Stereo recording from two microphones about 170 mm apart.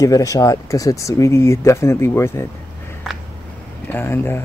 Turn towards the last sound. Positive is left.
turn(degrees=15)  # may be behind; listen again after turning